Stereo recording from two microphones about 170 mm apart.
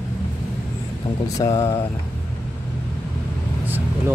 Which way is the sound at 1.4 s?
15° left (ahead or behind).